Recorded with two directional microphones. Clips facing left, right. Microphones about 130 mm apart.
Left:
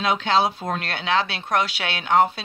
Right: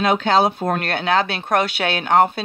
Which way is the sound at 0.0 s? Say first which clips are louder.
Right 4 dB; 50° right (ahead or behind).